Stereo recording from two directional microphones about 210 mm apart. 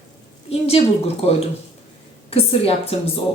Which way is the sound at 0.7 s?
30° left (ahead or behind).